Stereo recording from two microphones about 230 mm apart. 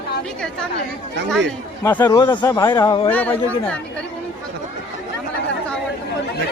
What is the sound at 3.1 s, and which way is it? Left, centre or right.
Speech, centre.